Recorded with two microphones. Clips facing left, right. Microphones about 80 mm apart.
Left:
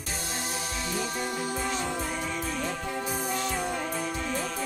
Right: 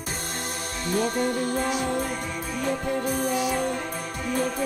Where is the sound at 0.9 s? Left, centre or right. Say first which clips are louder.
Right 9 dB; right.